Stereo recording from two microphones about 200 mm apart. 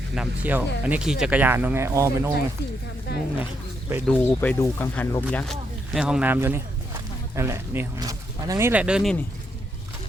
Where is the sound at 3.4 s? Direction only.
10° right (ahead or behind).